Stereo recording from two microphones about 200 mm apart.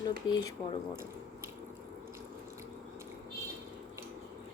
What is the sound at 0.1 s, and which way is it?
Speech, 20° left (ahead or behind).